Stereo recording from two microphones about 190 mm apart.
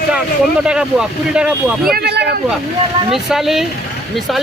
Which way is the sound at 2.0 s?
60° right (ahead or behind).